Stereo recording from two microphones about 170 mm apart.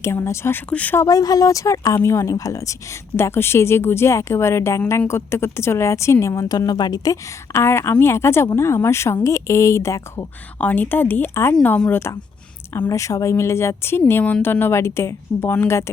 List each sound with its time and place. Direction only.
0.0 s speech: 15° left (ahead or behind)
1.0 s speech: 20° left (ahead or behind)